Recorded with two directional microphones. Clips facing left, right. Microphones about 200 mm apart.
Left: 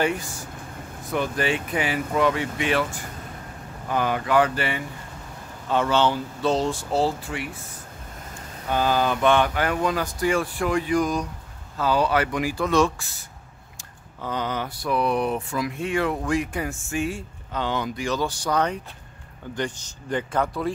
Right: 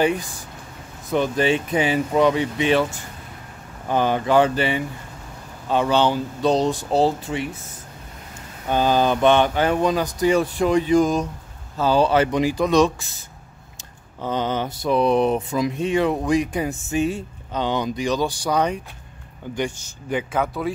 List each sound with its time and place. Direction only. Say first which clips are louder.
0.0 s speech: right 4 dB; 15° right (ahead or behind)
8.6 s speech: right 4 dB; 20° right (ahead or behind)
14.2 s speech: right 4 dB; 25° right (ahead or behind); by 20.7 s 5° right (ahead or behind)